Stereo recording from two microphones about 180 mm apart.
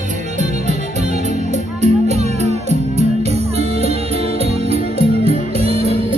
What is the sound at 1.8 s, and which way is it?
Music, 40° right (ahead or behind).